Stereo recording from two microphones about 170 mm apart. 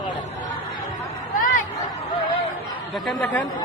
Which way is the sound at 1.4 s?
50° left (ahead or behind).